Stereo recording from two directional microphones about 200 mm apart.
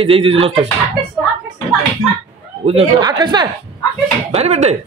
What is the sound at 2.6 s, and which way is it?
Speech, 30° right (ahead or behind).